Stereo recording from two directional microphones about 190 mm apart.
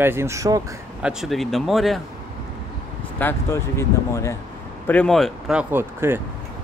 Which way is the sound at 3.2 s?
10° left (ahead or behind).